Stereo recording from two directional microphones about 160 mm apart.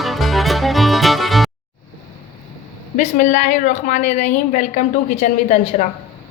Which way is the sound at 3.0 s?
50° left (ahead or behind).